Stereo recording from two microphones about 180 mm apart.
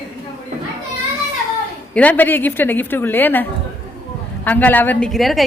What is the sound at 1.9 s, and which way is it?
A woman's voice, 10° left (ahead or behind).